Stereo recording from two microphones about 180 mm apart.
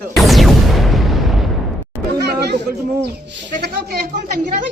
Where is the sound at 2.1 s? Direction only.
65° right (ahead or behind).